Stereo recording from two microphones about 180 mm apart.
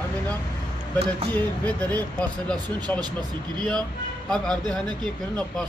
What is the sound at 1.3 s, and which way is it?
Speech, 10° left (ahead or behind).